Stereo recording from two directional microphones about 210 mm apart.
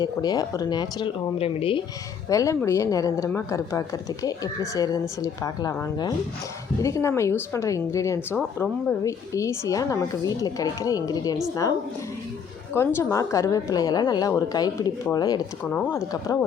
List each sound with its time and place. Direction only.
0.0 s speech: 20° left (ahead or behind)
2.3 s a woman's voice: 15° left (ahead or behind)
12.7 s a woman's voice: 10° left (ahead or behind)